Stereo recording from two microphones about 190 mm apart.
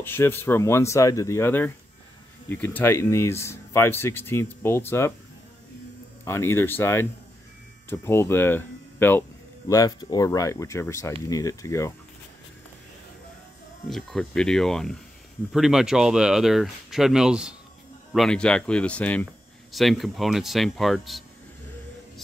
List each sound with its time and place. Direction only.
0.0 s speech: 10° left (ahead or behind)
6.2 s speech: 10° left (ahead or behind)
13.8 s speech: centre (ahead or behind)